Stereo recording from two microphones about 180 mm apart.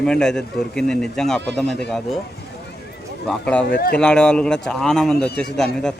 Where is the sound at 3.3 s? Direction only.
5° left (ahead or behind).